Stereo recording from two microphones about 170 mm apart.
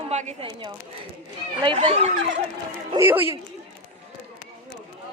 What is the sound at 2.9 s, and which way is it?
Speech, 15° right (ahead or behind).